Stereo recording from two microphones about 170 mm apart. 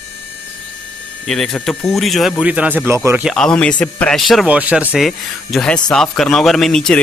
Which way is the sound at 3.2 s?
Centre (ahead or behind).